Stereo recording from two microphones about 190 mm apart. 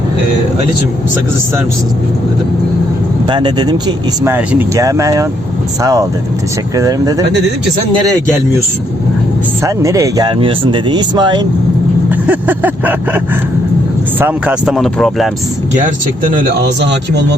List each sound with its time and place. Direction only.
3.2 s speech: 25° right (ahead or behind)
9.6 s speech: 15° right (ahead or behind)
12.2 s speech: 10° right (ahead or behind)
16.3 s speech: 60° right (ahead or behind)